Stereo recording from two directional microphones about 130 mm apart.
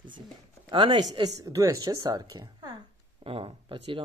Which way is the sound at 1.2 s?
25° right (ahead or behind).